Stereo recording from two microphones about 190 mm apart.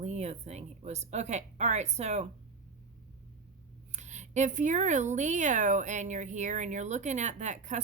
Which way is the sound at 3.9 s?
40° right (ahead or behind).